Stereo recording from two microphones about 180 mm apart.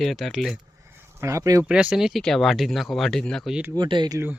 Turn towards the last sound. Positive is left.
turn(degrees=-25)  # may be behind; listen again after turning